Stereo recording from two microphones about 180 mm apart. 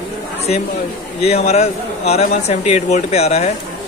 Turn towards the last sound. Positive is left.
turn(degrees=35)  # may be behind; listen again after turning